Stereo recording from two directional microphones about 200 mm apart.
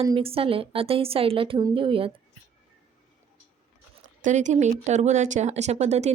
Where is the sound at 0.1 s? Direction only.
30° right (ahead or behind).